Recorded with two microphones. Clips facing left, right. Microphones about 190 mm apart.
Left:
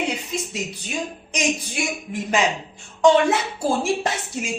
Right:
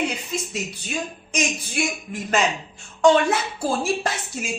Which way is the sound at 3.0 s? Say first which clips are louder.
Left 1 dB; 20° left (ahead or behind).